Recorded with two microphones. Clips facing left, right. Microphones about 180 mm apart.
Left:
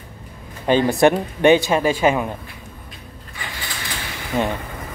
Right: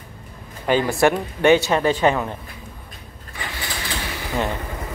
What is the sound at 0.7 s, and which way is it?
Speech, 20° left (ahead or behind).